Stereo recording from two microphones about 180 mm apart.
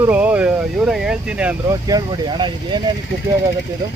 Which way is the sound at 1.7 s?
20° right (ahead or behind).